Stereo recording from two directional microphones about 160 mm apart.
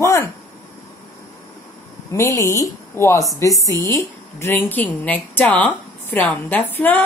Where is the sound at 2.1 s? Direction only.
20° left (ahead or behind).